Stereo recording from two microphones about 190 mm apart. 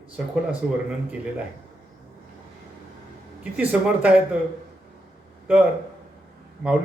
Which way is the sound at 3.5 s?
5° right (ahead or behind).